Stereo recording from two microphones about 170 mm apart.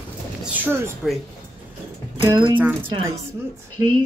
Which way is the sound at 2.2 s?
30° right (ahead or behind).